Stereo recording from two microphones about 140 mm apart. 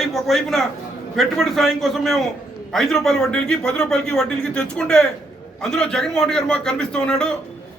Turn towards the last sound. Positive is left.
turn(degrees=5)  # may be behind; listen again after turning